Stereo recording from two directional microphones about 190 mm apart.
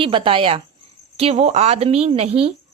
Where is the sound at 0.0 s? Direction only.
25° right (ahead or behind).